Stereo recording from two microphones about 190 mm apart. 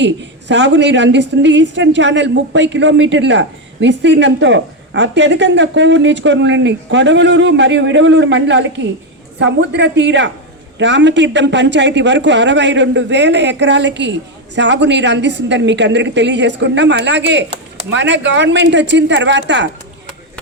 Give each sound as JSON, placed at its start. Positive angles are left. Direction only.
{"t": 0.0, "sound": "a woman's voice", "side_deg": -70}